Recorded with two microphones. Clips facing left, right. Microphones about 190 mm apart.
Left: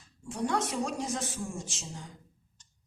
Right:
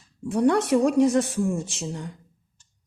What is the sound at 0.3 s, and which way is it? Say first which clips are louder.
A woman's voice: right 11 dB; 65° right (ahead or behind).